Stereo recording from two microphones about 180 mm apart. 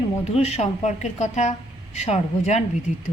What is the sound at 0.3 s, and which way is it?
A woman's voice, 35° left (ahead or behind).